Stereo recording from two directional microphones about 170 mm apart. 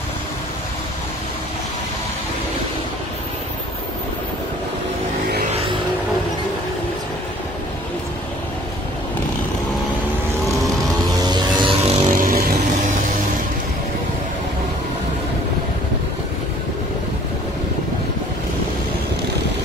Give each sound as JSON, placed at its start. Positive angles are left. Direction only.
{"t": 11.2, "sound": "vehicle", "side_deg": -25}
{"t": 12.1, "sound": "vehicle", "side_deg": -55}